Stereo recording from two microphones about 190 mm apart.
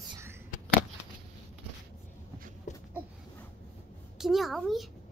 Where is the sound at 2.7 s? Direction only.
40° left (ahead or behind).